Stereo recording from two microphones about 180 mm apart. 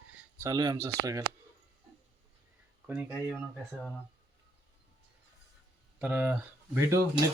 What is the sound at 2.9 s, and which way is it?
Speech, 10° right (ahead or behind).